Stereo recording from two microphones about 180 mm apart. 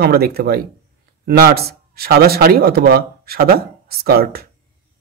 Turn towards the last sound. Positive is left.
turn(degrees=-60)  # may be behind; listen again after turning